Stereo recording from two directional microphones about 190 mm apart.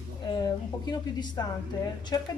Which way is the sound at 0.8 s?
20° left (ahead or behind).